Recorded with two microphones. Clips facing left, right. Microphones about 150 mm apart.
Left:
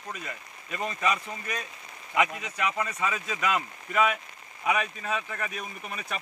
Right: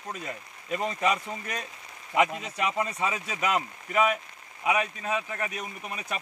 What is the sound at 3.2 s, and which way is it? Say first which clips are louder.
Speech: right 1 dB; 10° right (ahead or behind).